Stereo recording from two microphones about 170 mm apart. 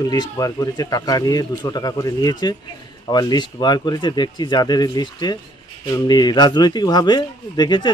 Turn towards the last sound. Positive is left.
turn(degrees=25)  # may be behind; listen again after turning